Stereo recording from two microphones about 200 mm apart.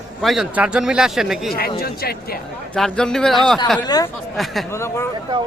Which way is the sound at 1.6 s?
50° left (ahead or behind).